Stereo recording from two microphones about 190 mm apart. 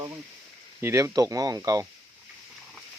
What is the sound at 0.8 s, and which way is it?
Speech, 15° right (ahead or behind).